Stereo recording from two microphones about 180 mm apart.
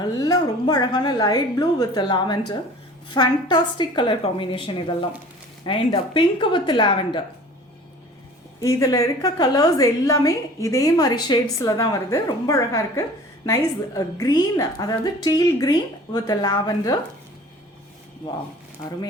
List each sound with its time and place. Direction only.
0.0 s a woman's voice: 20° left (ahead or behind)
8.6 s a woman's voice: 20° left (ahead or behind)